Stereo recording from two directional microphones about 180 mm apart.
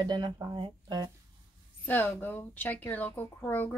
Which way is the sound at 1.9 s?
10° left (ahead or behind).